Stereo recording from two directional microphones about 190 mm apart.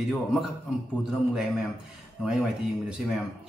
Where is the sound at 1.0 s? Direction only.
5° right (ahead or behind).